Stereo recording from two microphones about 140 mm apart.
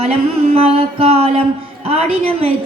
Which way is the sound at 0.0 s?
45° right (ahead or behind).